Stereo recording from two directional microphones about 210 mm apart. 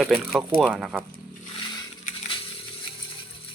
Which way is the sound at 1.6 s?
20° left (ahead or behind).